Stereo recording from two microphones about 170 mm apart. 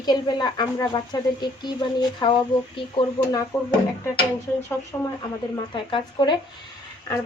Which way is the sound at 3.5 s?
5° left (ahead or behind).